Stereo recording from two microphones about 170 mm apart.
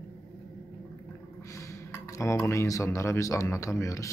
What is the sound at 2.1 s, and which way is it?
A man's voice, 15° left (ahead or behind).